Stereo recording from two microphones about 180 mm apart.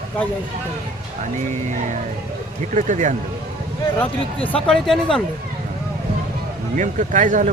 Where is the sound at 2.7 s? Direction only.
45° right (ahead or behind).